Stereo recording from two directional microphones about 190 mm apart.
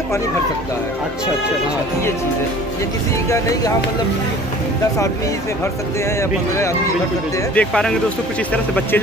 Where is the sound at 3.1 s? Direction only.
15° left (ahead or behind).